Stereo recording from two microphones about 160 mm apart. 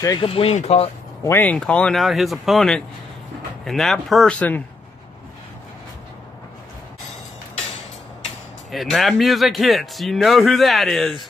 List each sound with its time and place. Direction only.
0.0 s speech: 25° left (ahead or behind)
0.3 s speech: 40° left (ahead or behind)
1.2 s speech: 10° left (ahead or behind)
8.7 s speech: centre (ahead or behind)